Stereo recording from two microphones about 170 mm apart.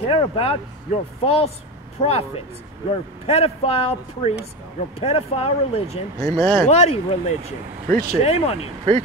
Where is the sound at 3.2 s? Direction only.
35° left (ahead or behind).